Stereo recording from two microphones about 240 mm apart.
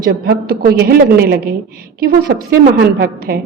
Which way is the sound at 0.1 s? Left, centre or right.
Right.